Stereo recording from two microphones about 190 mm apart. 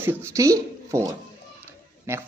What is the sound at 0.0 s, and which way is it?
A woman's voice, 10° right (ahead or behind).